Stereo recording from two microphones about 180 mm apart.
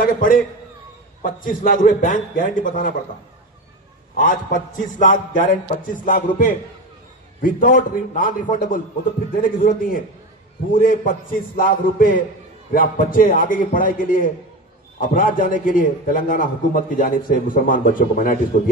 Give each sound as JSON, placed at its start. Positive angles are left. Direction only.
{"t": 0.0, "sound": "a man's voice", "side_deg": 50}
{"t": 4.2, "sound": "a man's voice", "side_deg": 50}